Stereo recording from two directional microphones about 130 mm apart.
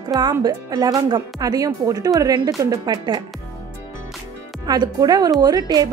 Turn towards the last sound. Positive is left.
turn(degrees=-30)  # may be behind; listen again after turning